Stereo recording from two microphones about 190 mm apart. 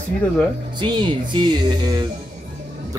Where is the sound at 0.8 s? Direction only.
25° right (ahead or behind).